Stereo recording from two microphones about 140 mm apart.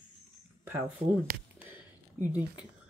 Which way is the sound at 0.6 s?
15° right (ahead or behind).